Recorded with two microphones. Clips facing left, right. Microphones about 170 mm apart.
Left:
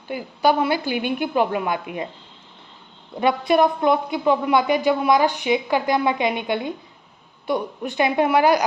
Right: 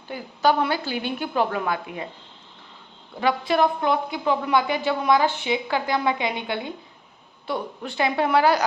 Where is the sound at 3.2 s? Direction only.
20° left (ahead or behind).